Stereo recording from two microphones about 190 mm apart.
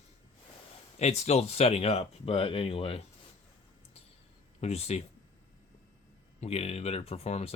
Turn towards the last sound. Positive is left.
turn(degrees=35)  # may be behind; listen again after turning